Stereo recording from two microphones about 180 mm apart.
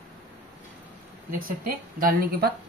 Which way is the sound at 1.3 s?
50° right (ahead or behind).